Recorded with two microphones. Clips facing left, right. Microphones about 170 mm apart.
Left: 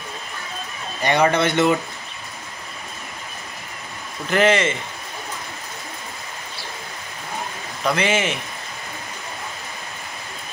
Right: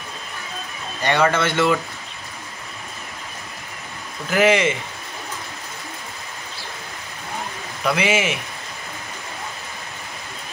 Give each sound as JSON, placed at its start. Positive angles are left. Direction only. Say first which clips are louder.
{"t": 1.0, "sound": "a man's voice", "louder": "left 1 dB", "side_deg": 15}
{"t": 4.3, "sound": "a man's voice", "louder": "right 1 dB", "side_deg": -10}
{"t": 7.8, "sound": "a man's voice", "louder": "even", "side_deg": -10}